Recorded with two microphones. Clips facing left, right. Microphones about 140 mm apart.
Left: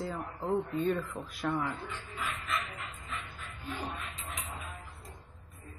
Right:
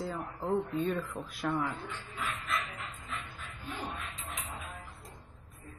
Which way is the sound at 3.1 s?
Centre (ahead or behind).